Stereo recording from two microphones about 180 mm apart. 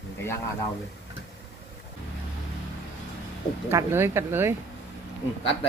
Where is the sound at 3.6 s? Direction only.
15° right (ahead or behind).